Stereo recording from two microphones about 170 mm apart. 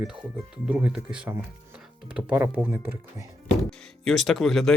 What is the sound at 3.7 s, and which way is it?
Speech, centre (ahead or behind).